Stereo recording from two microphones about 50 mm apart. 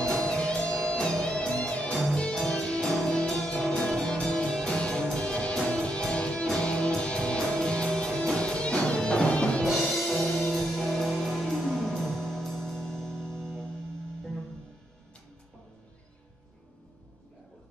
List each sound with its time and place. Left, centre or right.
0.1 s music: centre
9.7 s music: centre